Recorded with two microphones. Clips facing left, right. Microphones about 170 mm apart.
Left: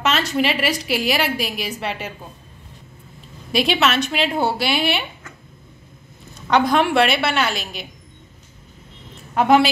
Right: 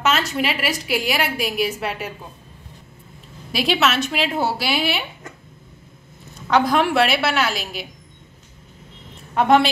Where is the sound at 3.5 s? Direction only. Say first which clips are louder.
Left 1 dB; centre (ahead or behind).